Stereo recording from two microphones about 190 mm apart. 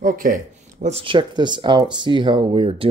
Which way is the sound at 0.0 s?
45° right (ahead or behind).